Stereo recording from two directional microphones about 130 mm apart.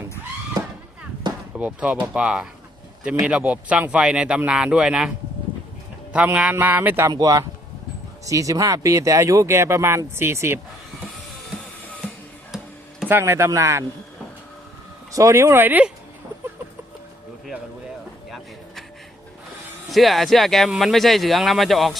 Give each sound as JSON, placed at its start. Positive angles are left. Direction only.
{"t": 1.5, "sound": "speech", "side_deg": -10}
{"t": 6.1, "sound": "speech", "side_deg": -10}
{"t": 7.1, "sound": "speech", "side_deg": -25}
{"t": 13.1, "sound": "speech", "side_deg": -20}
{"t": 15.1, "sound": "speech", "side_deg": -25}
{"t": 19.9, "sound": "speech", "side_deg": 0}